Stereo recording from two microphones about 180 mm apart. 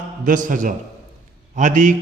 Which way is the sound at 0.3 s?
45° right (ahead or behind).